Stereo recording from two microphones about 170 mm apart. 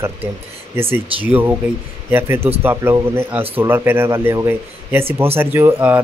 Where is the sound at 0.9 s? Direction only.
10° right (ahead or behind).